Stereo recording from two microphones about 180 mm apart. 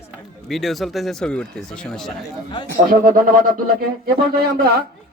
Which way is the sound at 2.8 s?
55° right (ahead or behind).